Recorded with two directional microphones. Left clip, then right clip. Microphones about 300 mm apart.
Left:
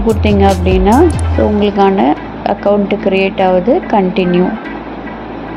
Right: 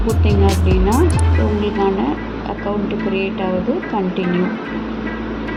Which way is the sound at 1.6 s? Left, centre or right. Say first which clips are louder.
Left 7 dB; left.